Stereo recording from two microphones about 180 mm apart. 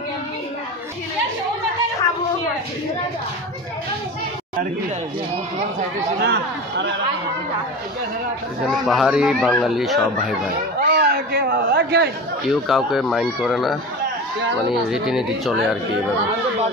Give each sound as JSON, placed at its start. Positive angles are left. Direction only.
{"t": 6.2, "sound": "speech", "side_deg": -75}
{"t": 8.6, "sound": "speech", "side_deg": 0}
{"t": 10.8, "sound": "a sound", "side_deg": -55}
{"t": 12.4, "sound": "speech", "side_deg": 0}
{"t": 14.9, "sound": "speech", "side_deg": -5}